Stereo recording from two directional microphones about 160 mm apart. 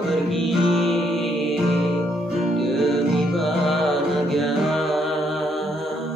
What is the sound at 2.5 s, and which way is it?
Music, centre (ahead or behind).